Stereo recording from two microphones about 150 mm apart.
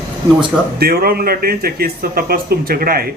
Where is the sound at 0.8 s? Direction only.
90° right.